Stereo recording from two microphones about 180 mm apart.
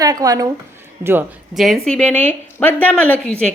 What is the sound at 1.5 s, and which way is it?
A woman's voice, centre (ahead or behind).